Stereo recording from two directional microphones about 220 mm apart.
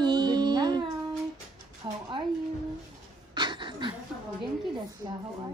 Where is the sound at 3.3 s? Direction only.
20° right (ahead or behind).